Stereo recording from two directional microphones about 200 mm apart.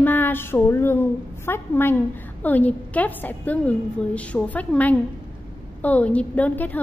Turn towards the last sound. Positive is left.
turn(degrees=10)  # may be behind; listen again after turning